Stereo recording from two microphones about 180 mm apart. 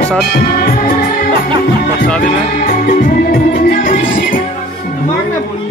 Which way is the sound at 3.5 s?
50° left (ahead or behind).